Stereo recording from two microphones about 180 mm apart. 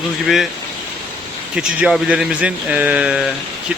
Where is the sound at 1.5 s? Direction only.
5° right (ahead or behind).